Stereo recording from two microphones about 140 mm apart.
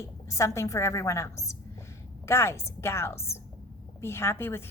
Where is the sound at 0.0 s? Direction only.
20° left (ahead or behind).